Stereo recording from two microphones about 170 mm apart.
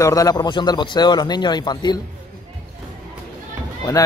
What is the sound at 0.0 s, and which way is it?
Speech, 20° left (ahead or behind).